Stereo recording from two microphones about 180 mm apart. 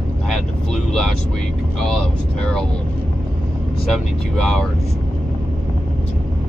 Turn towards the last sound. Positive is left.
turn(degrees=5)  # may be behind; listen again after turning